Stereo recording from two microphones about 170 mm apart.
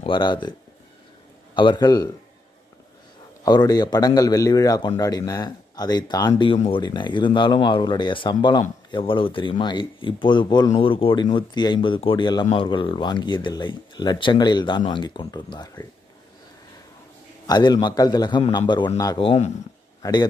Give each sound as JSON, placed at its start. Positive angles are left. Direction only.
{"t": 0.0, "sound": "a man's voice", "side_deg": 25}
{"t": 3.4, "sound": "a man's voice", "side_deg": 25}
{"t": 17.5, "sound": "a man's voice", "side_deg": 25}
{"t": 20.0, "sound": "speech", "side_deg": 25}